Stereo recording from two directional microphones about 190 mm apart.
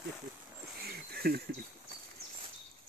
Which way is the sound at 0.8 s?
55° right (ahead or behind).